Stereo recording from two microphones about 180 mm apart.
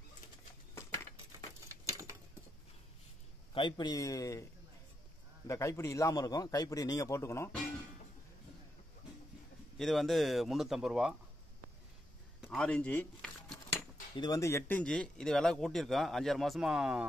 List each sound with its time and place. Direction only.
1.7 s a sound: 15° right (ahead or behind)
3.5 s a man's voice: 25° left (ahead or behind)
5.5 s a man's voice: 15° left (ahead or behind)
9.8 s speech: centre (ahead or behind)
12.4 s cutlery: 5° left (ahead or behind)
14.1 s speech: 20° left (ahead or behind); by 17.0 s 5° right (ahead or behind)